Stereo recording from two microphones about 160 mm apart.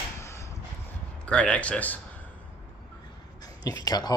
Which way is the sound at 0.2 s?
15° left (ahead or behind).